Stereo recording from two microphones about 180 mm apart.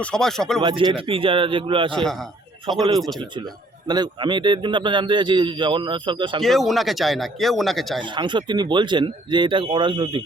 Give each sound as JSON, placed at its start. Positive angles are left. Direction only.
{"t": 0.0, "sound": "speech", "side_deg": 5}
{"t": 0.6, "sound": "a man's voice", "side_deg": -25}
{"t": 1.9, "sound": "speech", "side_deg": 0}
{"t": 2.7, "sound": "a man's voice", "side_deg": -25}
{"t": 3.8, "sound": "a man's voice", "side_deg": -25}
{"t": 6.4, "sound": "speech", "side_deg": 0}
{"t": 8.0, "sound": "a man's voice", "side_deg": -25}